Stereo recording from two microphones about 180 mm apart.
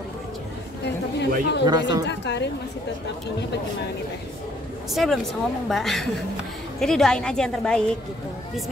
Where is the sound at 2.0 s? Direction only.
70° left (ahead or behind).